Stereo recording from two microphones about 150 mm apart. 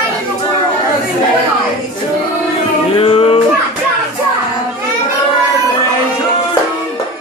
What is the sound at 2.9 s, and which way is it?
Music, 40° left (ahead or behind).